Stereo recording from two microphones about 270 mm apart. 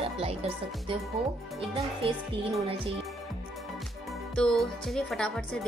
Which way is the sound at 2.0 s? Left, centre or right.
Centre.